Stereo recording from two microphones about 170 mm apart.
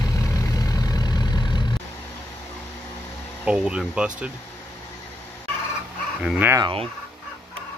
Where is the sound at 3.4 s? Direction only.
5° right (ahead or behind).